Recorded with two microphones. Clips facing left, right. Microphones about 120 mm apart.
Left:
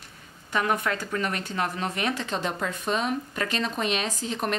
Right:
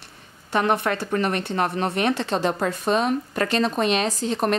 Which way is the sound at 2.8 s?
40° right (ahead or behind).